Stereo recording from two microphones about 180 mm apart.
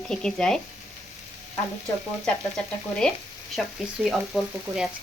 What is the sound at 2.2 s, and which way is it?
A woman's voice, 5° left (ahead or behind).